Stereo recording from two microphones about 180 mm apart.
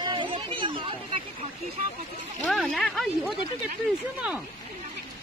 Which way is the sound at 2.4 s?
Centre (ahead or behind).